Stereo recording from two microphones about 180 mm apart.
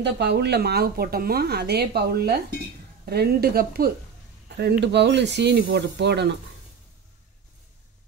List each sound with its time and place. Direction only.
0.0 s speech: 70° right (ahead or behind)